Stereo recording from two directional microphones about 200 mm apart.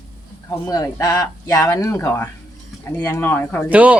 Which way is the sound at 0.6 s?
15° left (ahead or behind).